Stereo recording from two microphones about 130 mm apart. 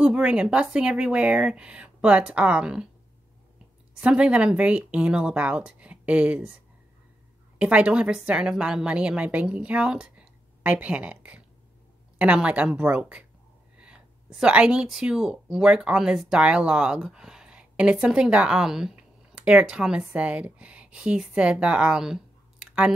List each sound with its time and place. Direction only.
0.0 s a woman's voice: 10° right (ahead or behind)
4.0 s a woman's voice: 10° right (ahead or behind)
7.5 s a woman's voice: 10° right (ahead or behind)